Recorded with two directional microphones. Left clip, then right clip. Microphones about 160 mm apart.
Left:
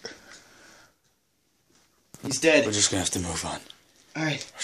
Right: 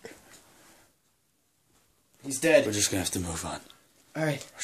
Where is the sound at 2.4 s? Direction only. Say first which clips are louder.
Left 1 dB; 40° right (ahead or behind).